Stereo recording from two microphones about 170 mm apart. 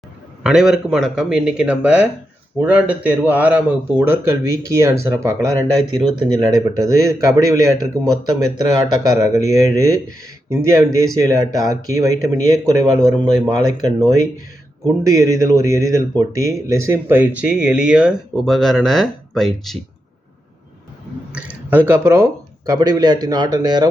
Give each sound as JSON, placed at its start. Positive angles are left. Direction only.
{"t": 0.4, "sound": "a man's voice", "side_deg": 0}
{"t": 21.3, "sound": "speech", "side_deg": -10}